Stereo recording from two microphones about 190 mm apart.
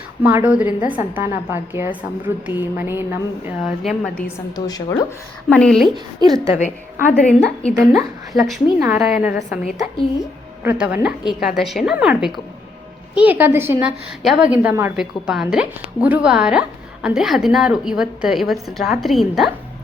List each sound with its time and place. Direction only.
0.2 s a woman's voice: 10° right (ahead or behind)
3.6 s speech: centre (ahead or behind)
4.5 s a woman's voice: 20° left (ahead or behind)
5.5 s speech: 5° left (ahead or behind)
6.2 s a woman's voice: 20° right (ahead or behind)
7.3 s speech: 5° left (ahead or behind)
10.6 s a woman's voice: 10° right (ahead or behind)